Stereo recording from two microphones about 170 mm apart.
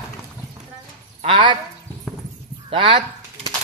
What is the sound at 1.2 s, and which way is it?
Speech, 30° right (ahead or behind).